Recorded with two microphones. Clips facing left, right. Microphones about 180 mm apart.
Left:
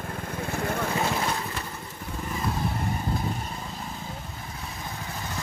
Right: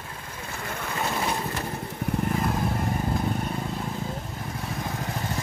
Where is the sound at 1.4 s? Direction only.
50° right (ahead or behind).